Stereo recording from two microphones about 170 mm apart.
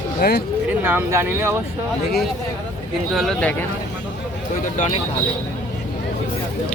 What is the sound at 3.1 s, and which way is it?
Speech, centre (ahead or behind).